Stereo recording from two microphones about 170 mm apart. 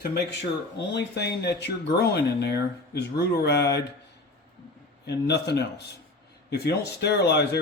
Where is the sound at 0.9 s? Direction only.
85° left.